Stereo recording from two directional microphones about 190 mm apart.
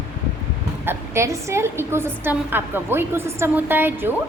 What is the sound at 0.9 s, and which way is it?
A woman's voice, 15° right (ahead or behind).